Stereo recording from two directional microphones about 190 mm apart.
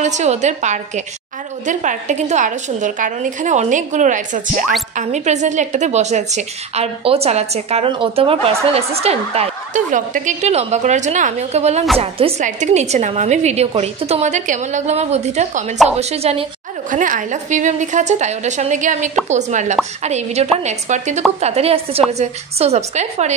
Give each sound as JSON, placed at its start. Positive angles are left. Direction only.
{"t": 0.0, "sound": "a woman's voice", "side_deg": -35}
{"t": 16.9, "sound": "a woman's voice", "side_deg": -45}